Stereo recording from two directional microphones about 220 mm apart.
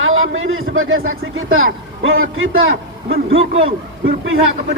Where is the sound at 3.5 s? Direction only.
25° right (ahead or behind).